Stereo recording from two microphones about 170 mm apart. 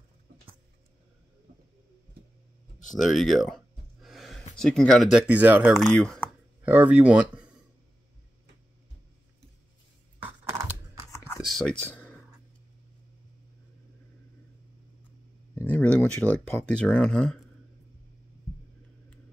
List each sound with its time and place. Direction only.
3.0 s a sound: centre (ahead or behind)
4.6 s speech: 5° left (ahead or behind)
6.6 s speech: 10° right (ahead or behind)
11.1 s computer keyboard: 15° left (ahead or behind)
11.4 s speech: 5° left (ahead or behind)
15.5 s speech: 10° left (ahead or behind)